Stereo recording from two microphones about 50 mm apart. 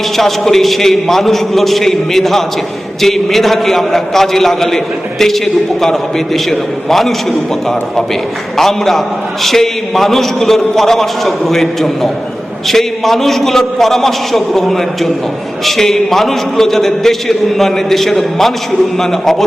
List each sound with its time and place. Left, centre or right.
0.2 s a man's voice: centre
5.8 s a man's voice: centre